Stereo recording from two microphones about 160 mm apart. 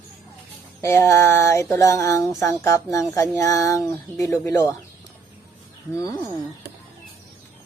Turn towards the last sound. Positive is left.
turn(degrees=20)  # may be behind; listen again after turning